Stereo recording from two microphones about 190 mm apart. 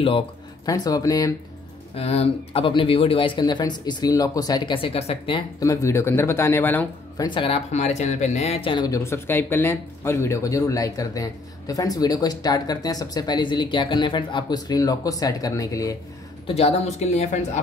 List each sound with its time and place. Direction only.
0.7 s speech: 20° left (ahead or behind)
2.0 s speech: 30° left (ahead or behind); by 7.2 s 10° left (ahead or behind)
7.2 s speech: 25° left (ahead or behind)
16.4 s speech: 30° left (ahead or behind)